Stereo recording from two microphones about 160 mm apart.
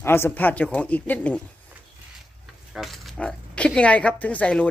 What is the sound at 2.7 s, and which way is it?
Speech, centre (ahead or behind).